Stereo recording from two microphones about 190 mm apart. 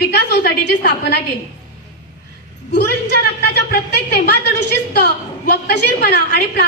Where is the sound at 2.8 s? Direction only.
60° left (ahead or behind).